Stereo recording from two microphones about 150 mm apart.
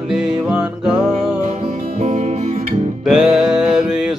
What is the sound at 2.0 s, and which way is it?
Music, 50° right (ahead or behind).